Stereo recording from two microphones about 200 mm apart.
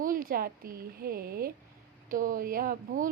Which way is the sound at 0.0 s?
45° right (ahead or behind).